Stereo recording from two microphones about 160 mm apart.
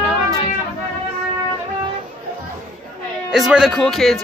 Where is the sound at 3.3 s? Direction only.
5° right (ahead or behind).